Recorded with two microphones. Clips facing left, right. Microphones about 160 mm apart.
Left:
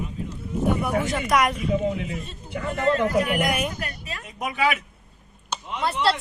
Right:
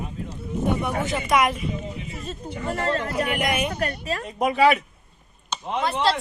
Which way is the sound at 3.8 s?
35° right (ahead or behind).